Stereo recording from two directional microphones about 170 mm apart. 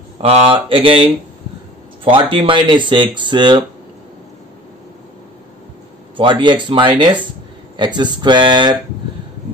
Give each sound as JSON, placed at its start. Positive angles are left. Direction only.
{"t": 0.2, "sound": "mantra", "side_deg": -35}
{"t": 2.0, "sound": "speech", "side_deg": -30}
{"t": 6.1, "sound": "speech", "side_deg": -30}